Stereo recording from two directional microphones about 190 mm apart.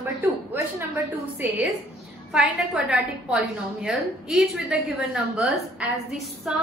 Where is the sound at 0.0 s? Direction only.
10° right (ahead or behind).